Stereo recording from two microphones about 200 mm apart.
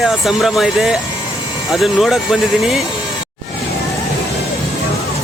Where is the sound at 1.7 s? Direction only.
Centre (ahead or behind).